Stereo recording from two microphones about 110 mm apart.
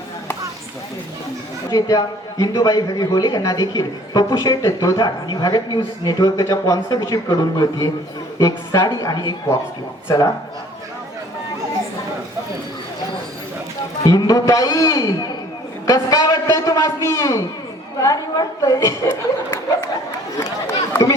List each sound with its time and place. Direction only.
1.7 s a man's voice: 35° left (ahead or behind)
5.0 s a man's voice: 40° left (ahead or behind); by 10.3 s 25° left (ahead or behind)
14.0 s a man's voice: 30° left (ahead or behind)